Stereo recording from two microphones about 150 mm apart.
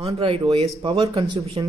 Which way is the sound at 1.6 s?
30° right (ahead or behind).